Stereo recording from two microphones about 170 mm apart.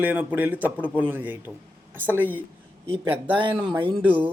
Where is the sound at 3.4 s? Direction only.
30° right (ahead or behind).